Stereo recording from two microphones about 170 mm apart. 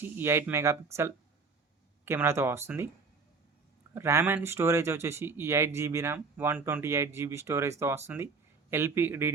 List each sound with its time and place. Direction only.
0.0 s speech: 15° right (ahead or behind)
2.0 s speech: 15° right (ahead or behind)
3.9 s speech: 15° right (ahead or behind)